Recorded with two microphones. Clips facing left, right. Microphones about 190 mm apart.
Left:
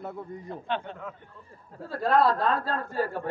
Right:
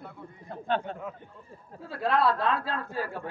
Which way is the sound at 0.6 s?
45° right (ahead or behind).